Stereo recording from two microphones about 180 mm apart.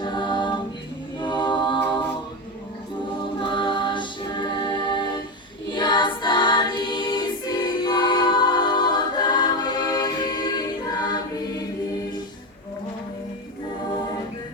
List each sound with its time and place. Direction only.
0.0 s a capella: 25° left (ahead or behind)
3.4 s music: 25° left (ahead or behind)
5.7 s choir: 25° left (ahead or behind)